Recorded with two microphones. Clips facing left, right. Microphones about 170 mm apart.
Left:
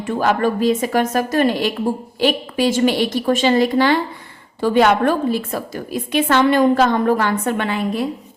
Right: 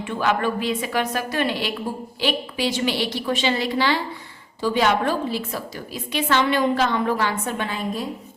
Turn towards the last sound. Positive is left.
turn(degrees=70)  # may be behind; listen again after turning